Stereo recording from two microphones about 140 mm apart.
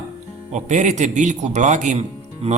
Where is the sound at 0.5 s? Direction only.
60° right (ahead or behind).